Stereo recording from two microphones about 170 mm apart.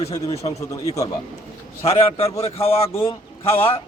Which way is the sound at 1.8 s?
35° left (ahead or behind).